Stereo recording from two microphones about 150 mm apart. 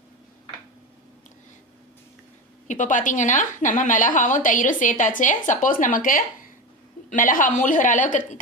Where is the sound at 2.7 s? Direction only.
60° left (ahead or behind).